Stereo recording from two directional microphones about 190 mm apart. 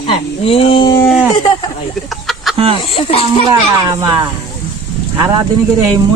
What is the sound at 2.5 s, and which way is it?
Speech, 30° right (ahead or behind).